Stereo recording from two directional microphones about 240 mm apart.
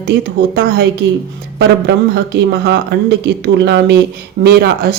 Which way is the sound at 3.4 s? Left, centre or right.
Right.